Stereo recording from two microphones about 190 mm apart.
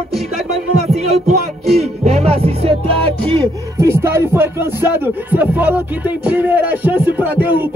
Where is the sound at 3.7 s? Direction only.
15° right (ahead or behind).